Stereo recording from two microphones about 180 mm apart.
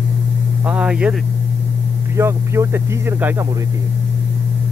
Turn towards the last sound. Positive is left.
turn(degrees=-15)  # may be behind; listen again after turning